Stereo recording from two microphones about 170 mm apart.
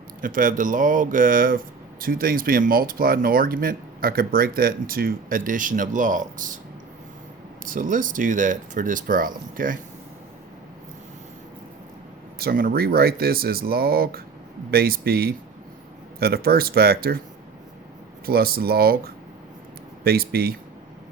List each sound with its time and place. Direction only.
0.2 s speech: 55° right (ahead or behind)
7.6 s speech: 50° right (ahead or behind)
12.4 s speech: 60° right (ahead or behind)
18.3 s speech: 60° right (ahead or behind)